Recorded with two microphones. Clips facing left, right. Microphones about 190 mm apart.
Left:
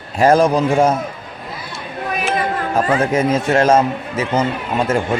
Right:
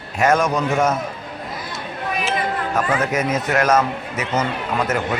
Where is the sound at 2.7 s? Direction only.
30° left (ahead or behind).